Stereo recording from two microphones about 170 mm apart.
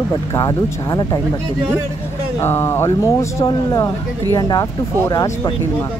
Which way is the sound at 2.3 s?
15° left (ahead or behind).